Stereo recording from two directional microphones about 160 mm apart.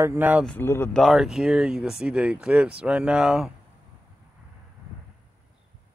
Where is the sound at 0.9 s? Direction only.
Centre (ahead or behind).